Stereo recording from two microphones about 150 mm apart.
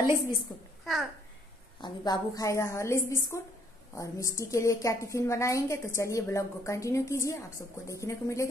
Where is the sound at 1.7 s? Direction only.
30° left (ahead or behind).